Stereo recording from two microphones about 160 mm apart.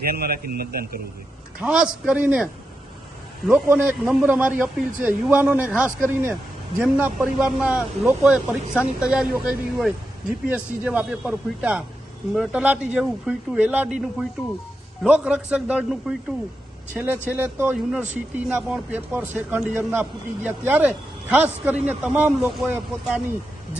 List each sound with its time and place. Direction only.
0.0 s a man's voice: 70° right (ahead or behind)
1.5 s speech: 5° right (ahead or behind)